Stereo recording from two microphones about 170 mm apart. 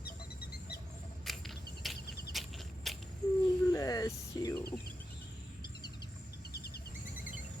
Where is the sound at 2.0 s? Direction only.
65° left (ahead or behind).